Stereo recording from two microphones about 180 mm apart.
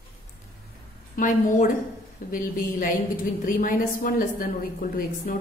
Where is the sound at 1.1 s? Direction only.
45° left (ahead or behind).